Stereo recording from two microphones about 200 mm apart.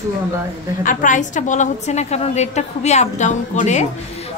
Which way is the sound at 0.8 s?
40° left (ahead or behind).